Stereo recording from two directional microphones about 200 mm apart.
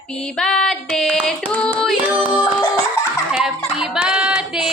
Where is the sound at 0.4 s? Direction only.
Centre (ahead or behind).